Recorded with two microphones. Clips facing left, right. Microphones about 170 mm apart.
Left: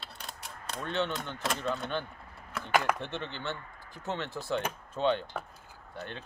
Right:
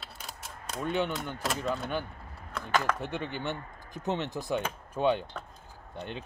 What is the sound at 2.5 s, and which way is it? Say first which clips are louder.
Speech: left 1 dB; 10° left (ahead or behind).